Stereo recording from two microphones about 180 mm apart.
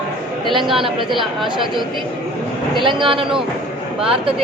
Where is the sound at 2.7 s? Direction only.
25° right (ahead or behind).